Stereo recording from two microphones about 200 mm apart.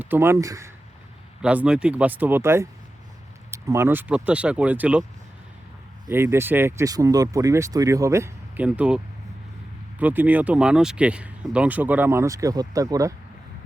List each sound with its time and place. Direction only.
0.0 s speech: 10° right (ahead or behind)
1.4 s speech: 5° right (ahead or behind)
6.1 s speech: 10° right (ahead or behind)
10.0 s speech: 10° right (ahead or behind)